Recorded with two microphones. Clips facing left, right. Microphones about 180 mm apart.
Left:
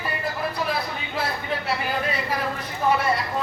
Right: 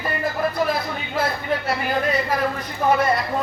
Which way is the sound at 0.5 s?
45° right (ahead or behind).